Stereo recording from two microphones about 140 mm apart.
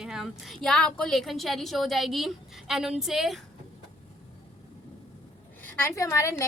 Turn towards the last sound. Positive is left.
turn(degrees=20)  # may be behind; listen again after turning